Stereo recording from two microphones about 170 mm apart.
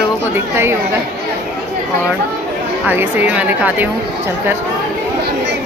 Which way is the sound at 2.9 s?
10° right (ahead or behind).